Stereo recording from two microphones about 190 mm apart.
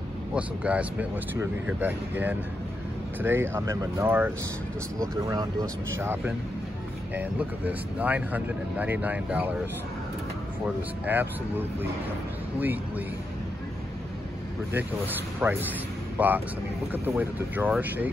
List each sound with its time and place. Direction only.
0.3 s speech: 5° right (ahead or behind)
10.6 s speech: 10° right (ahead or behind)
15.4 s speech: 10° right (ahead or behind)